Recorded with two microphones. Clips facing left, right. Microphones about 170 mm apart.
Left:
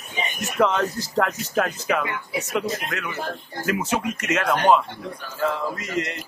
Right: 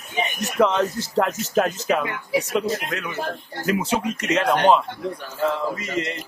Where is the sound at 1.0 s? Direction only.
25° right (ahead or behind).